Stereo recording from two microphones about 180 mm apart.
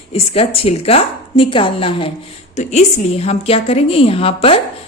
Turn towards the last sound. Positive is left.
turn(degrees=30)  # may be behind; listen again after turning